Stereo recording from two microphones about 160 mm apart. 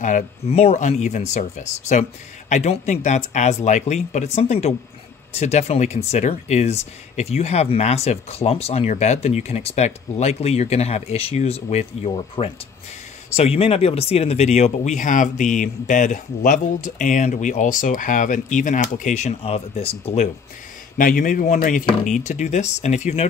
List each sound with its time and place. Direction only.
0.0 s speech: 45° left (ahead or behind)
21.0 s speech: 60° left (ahead or behind)